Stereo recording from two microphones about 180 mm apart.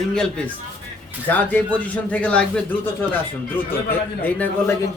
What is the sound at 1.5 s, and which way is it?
Speech, 10° left (ahead or behind).